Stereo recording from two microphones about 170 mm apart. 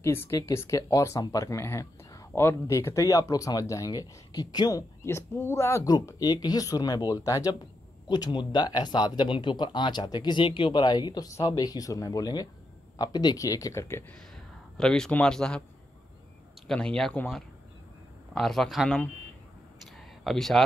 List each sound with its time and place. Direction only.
0.0 s speech: 15° left (ahead or behind)
14.3 s speech: 5° left (ahead or behind)
16.6 s speech: 5° left (ahead or behind)
20.2 s speech: centre (ahead or behind)